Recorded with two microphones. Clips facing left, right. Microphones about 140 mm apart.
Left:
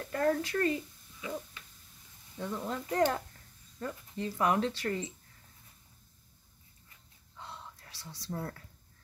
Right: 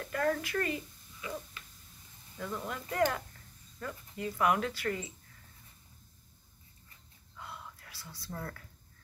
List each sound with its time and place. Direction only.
0.1 s a woman's voice: 30° left (ahead or behind)
2.3 s speech: 25° left (ahead or behind)
7.3 s whispering: 30° left (ahead or behind)
8.3 s speech: 30° left (ahead or behind)